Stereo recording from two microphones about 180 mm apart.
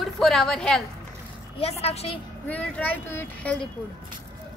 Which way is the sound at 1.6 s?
35° left (ahead or behind).